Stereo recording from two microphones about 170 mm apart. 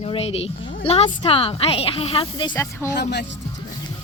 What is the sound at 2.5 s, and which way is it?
Speech, 15° left (ahead or behind).